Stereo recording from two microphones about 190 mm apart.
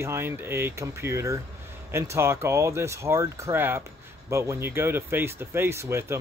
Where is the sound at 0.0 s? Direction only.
10° right (ahead or behind).